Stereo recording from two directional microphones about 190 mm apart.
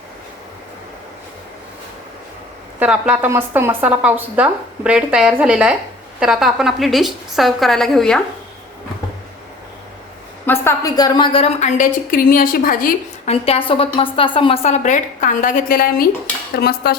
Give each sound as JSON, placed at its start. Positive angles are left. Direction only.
{"t": 2.7, "sound": "a woman's voice", "side_deg": -5}
{"t": 10.4, "sound": "a woman's voice", "side_deg": 10}
{"t": 13.2, "sound": "a woman's voice", "side_deg": 30}
{"t": 16.6, "sound": "dishes", "side_deg": 55}